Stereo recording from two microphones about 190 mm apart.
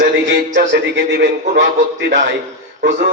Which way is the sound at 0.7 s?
70° right (ahead or behind).